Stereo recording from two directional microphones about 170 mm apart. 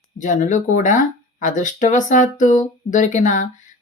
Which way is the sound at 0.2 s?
50° left (ahead or behind).